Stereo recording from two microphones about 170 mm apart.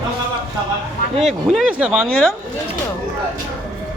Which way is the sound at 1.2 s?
Centre (ahead or behind).